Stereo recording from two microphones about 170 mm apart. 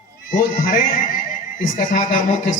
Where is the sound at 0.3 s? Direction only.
50° left (ahead or behind).